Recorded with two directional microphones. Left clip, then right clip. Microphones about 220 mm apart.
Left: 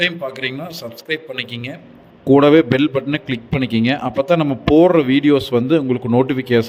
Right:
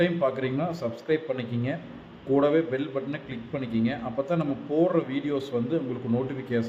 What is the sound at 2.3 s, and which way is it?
A man's voice, 40° left (ahead or behind).